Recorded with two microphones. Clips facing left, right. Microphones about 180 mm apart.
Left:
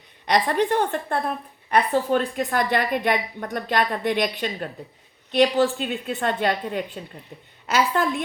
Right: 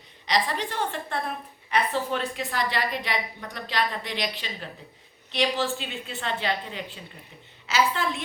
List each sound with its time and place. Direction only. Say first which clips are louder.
0.3 s a woman's voice: left 7 dB; 55° left (ahead or behind)